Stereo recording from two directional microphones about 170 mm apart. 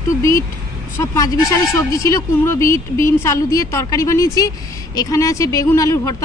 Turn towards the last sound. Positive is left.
turn(degrees=20)  # may be behind; listen again after turning